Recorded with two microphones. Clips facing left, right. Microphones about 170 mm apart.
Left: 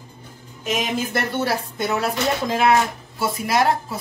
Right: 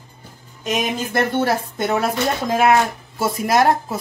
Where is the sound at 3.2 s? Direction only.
45° right (ahead or behind).